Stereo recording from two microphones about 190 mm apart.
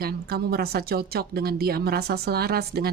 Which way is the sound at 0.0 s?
55° right (ahead or behind).